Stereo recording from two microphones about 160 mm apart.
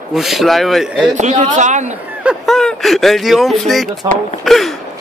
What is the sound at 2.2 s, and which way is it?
Speech, 5° right (ahead or behind).